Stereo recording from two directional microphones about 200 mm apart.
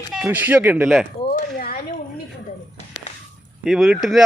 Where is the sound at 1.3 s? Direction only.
45° left (ahead or behind).